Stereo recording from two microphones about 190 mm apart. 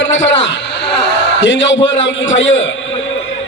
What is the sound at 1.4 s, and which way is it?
A man's voice, 75° left (ahead or behind).